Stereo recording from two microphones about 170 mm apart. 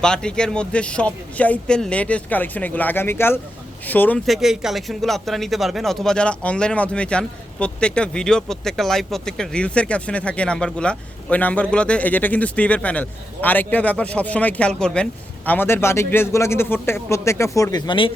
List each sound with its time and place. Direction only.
0.0 s speech: 5° left (ahead or behind)
4.3 s speech: centre (ahead or behind); by 18.1 s 30° left (ahead or behind)